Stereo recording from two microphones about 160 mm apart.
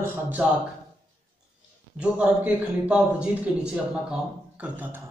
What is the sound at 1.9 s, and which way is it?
A man's voice, 10° right (ahead or behind).